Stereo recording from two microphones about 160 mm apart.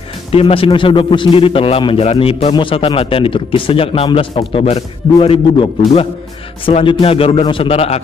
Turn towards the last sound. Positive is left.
turn(degrees=35)  # may be behind; listen again after turning